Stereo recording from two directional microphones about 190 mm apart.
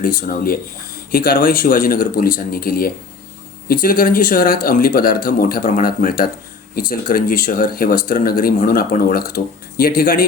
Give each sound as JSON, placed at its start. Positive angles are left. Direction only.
{"t": 0.0, "sound": "speech", "side_deg": 50}